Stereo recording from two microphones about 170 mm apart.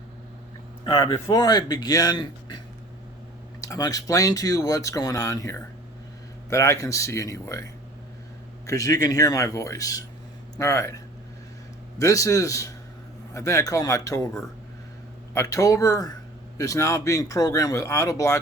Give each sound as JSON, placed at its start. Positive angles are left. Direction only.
{"t": 0.9, "sound": "speech", "side_deg": 25}
{"t": 3.6, "sound": "speech", "side_deg": 20}
{"t": 15.3, "sound": "speech", "side_deg": 20}